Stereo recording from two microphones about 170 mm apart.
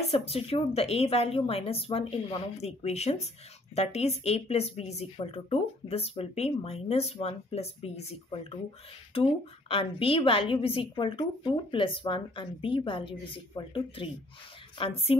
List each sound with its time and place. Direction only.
0.1 s a woman's voice: 35° left (ahead or behind)